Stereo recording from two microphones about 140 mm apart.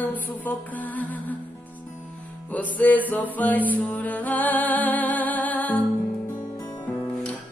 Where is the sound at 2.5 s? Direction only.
10° left (ahead or behind).